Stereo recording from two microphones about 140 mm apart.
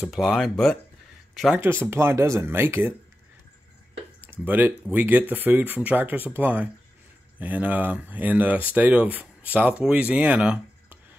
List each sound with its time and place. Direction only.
0.0 s speech: centre (ahead or behind)
1.6 s speech: 15° right (ahead or behind)
4.2 s speech: 15° right (ahead or behind)